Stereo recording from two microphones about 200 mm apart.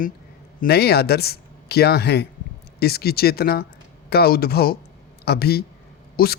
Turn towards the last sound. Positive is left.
turn(degrees=50)  # may be behind; listen again after turning